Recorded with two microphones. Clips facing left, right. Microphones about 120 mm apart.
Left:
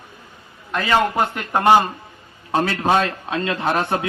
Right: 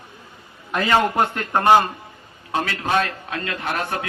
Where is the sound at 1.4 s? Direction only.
15° left (ahead or behind).